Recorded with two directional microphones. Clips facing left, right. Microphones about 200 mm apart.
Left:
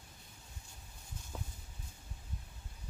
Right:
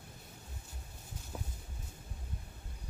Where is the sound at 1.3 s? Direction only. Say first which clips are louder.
Right 2 dB; 5° right (ahead or behind).